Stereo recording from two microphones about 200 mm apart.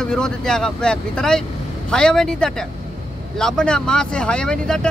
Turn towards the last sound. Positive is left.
turn(degrees=5)  # may be behind; listen again after turning